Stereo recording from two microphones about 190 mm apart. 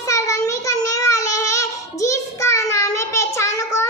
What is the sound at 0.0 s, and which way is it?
Child singing, 15° left (ahead or behind).